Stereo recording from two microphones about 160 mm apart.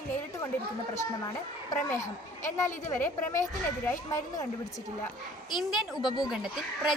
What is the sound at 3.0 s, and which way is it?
Speech, 15° left (ahead or behind).